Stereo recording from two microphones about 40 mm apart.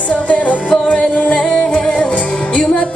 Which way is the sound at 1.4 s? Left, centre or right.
Centre.